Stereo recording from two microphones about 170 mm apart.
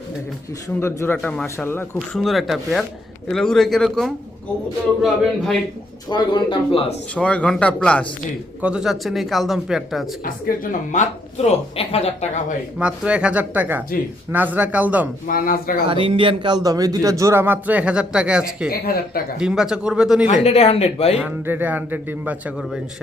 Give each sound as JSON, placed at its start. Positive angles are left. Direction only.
{"t": 0.8, "sound": "speech", "side_deg": 15}
{"t": 2.1, "sound": "speech", "side_deg": 0}
{"t": 6.1, "sound": "speech", "side_deg": 25}
{"t": 7.1, "sound": "speech", "side_deg": 5}
{"t": 8.6, "sound": "speech", "side_deg": -5}
{"t": 10.2, "sound": "speech", "side_deg": 55}
{"t": 12.8, "sound": "speech", "side_deg": -5}
{"t": 15.3, "sound": "speech", "side_deg": 60}
{"t": 15.9, "sound": "speech", "side_deg": -30}
{"t": 18.7, "sound": "speech", "side_deg": 60}
{"t": 19.4, "sound": "speech", "side_deg": -5}
{"t": 20.4, "sound": "speech", "side_deg": 35}
{"t": 21.2, "sound": "speech", "side_deg": -10}